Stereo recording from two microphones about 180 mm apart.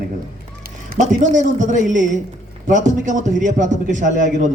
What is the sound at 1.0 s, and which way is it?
A man's voice, 45° right (ahead or behind).